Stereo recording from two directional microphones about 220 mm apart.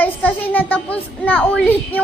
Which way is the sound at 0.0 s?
10° left (ahead or behind).